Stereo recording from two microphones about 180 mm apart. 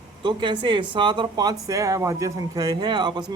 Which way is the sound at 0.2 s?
25° right (ahead or behind).